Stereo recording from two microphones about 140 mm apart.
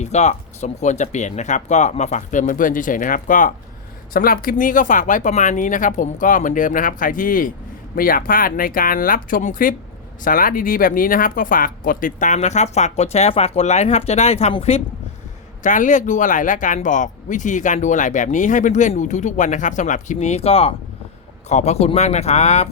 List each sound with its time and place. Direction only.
0.0 s speech: 55° left (ahead or behind); by 3.5 s 70° left (ahead or behind)
4.1 s speech: 90° left
7.9 s speech: 90° left; by 9.7 s 75° left (ahead or behind)
10.2 s speech: 85° left; by 14.8 s 50° left (ahead or behind)
15.6 s speech: 65° left (ahead or behind)